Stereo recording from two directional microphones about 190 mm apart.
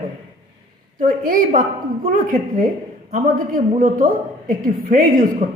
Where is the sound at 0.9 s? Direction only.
45° right (ahead or behind).